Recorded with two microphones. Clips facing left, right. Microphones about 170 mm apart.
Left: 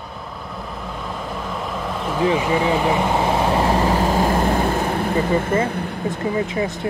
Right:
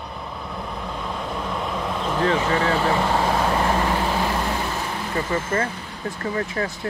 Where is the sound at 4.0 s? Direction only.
45° left (ahead or behind).